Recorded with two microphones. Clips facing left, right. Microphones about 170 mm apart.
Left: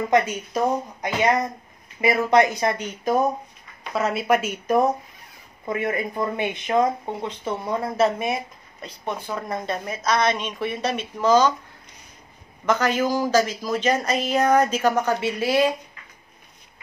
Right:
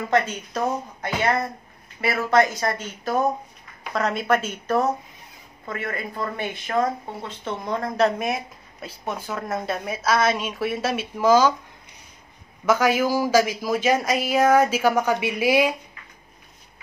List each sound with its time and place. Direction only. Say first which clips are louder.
0.1 s a woman's voice: left 1 dB; 10° left (ahead or behind); by 11.5 s 10° right (ahead or behind)
12.6 s speech: right 1 dB; 10° right (ahead or behind)